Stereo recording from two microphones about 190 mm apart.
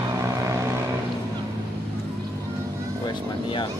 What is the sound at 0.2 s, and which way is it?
Vehicle, 15° right (ahead or behind).